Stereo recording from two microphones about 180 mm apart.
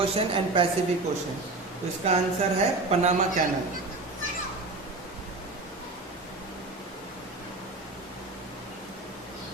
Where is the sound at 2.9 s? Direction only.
40° right (ahead or behind).